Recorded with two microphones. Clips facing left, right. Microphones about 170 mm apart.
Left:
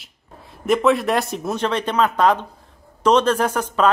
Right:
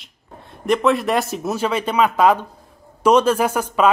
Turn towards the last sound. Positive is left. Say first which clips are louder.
# right 1 dB
turn(degrees=-10)  # may be behind; listen again after turning